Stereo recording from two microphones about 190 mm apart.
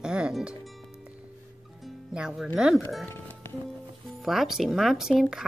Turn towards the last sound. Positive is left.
turn(degrees=0)  # may be behind; listen again after turning